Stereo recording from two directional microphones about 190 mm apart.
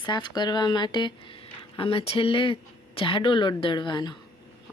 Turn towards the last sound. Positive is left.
turn(degrees=25)  # may be behind; listen again after turning